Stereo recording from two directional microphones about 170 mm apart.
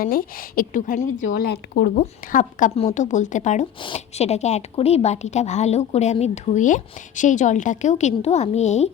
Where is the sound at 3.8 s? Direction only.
35° left (ahead or behind).